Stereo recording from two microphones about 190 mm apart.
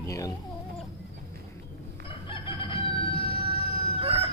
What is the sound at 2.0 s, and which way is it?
Chicken, 25° left (ahead or behind).